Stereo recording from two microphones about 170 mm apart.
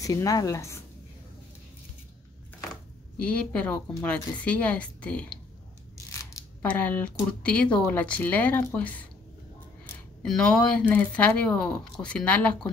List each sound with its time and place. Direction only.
0.0 s a woman's voice: 20° left (ahead or behind)
3.2 s speech: 5° left (ahead or behind)
6.1 s mechanisms: 15° left (ahead or behind)
7.4 s speech: 5° left (ahead or behind)
10.2 s speech: 5° left (ahead or behind)